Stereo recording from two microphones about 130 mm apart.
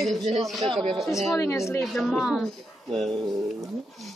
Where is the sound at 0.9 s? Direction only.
Centre (ahead or behind).